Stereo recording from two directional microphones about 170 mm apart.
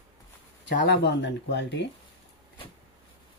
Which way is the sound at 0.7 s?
55° left (ahead or behind).